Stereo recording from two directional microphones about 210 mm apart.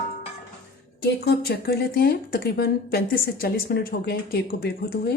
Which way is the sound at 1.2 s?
50° left (ahead or behind).